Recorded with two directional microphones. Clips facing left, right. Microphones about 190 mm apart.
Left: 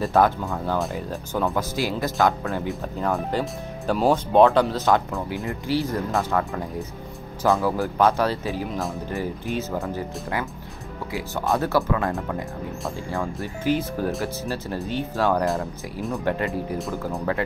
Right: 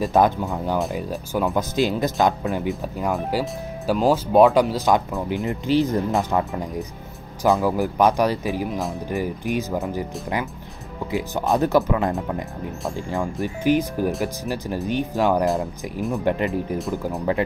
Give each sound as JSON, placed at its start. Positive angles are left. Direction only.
{"t": 0.0, "sound": "speech", "side_deg": -15}
{"t": 7.6, "sound": "speech", "side_deg": -15}
{"t": 15.4, "sound": "speech", "side_deg": 0}
{"t": 16.3, "sound": "speech", "side_deg": -15}